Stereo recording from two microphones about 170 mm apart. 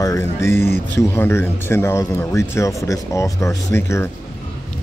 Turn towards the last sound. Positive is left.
turn(degrees=15)  # may be behind; listen again after turning